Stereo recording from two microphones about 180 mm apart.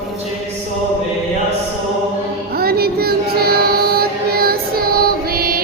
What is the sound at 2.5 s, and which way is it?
Child singing, 60° right (ahead or behind).